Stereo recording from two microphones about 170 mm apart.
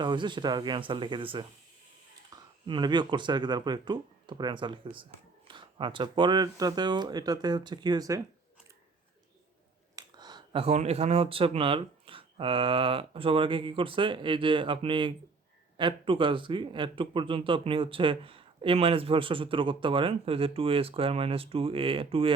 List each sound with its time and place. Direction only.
0.0 s speech: 25° right (ahead or behind)
9.9 s speech: 25° right (ahead or behind)